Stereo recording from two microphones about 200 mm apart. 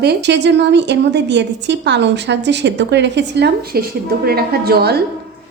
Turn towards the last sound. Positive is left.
turn(degrees=-50)  # may be behind; listen again after turning